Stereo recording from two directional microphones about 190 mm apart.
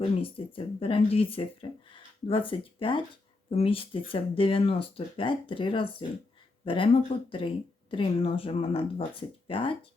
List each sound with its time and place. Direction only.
0.2 s speech: 30° left (ahead or behind)